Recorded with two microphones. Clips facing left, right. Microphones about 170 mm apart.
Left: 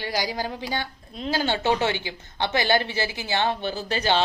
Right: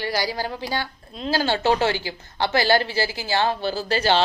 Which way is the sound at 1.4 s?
35° right (ahead or behind).